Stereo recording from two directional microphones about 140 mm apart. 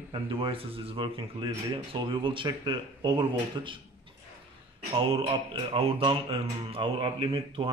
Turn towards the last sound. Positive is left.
turn(degrees=-40)  # may be behind; listen again after turning